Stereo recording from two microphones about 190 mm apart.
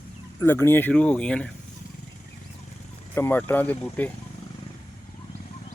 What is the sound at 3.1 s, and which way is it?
Speech, 10° left (ahead or behind).